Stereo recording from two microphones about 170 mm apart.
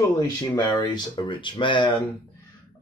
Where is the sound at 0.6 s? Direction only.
25° left (ahead or behind).